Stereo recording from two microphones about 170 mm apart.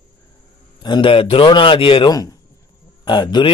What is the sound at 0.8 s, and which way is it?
A man's voice, 30° left (ahead or behind).